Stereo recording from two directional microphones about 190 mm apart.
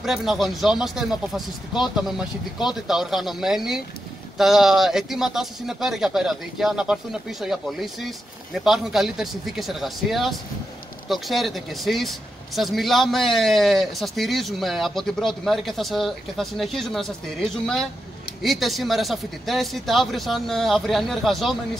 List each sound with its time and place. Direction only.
0.0 s speech: centre (ahead or behind)